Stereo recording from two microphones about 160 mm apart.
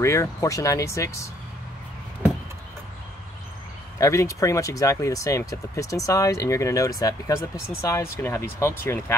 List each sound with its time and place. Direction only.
0.0 s speech: 20° left (ahead or behind)
4.0 s speech: 20° left (ahead or behind)